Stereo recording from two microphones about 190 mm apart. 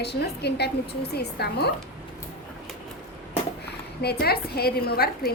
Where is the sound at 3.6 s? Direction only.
60° left (ahead or behind).